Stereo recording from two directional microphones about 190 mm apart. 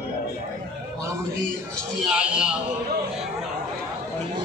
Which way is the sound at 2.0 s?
5° right (ahead or behind).